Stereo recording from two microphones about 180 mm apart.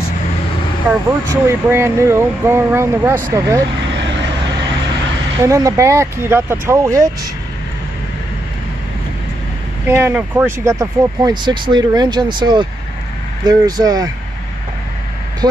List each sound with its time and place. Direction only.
0.8 s speech: 15° right (ahead or behind)
5.4 s speech: 15° right (ahead or behind)
9.8 s speech: 10° right (ahead or behind)